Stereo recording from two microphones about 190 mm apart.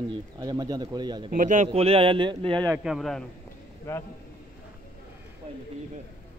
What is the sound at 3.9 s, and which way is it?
Speech, 15° left (ahead or behind).